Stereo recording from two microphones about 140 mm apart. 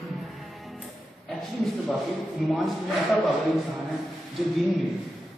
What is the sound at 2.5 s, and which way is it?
A man's voice, centre (ahead or behind).